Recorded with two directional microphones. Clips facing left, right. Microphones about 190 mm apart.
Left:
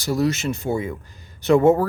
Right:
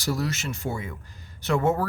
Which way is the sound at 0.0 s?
20° left (ahead or behind).